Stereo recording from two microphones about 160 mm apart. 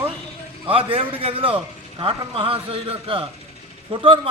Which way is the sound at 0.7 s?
35° right (ahead or behind).